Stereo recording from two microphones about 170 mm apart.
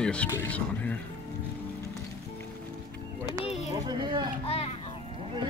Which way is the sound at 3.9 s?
25° right (ahead or behind).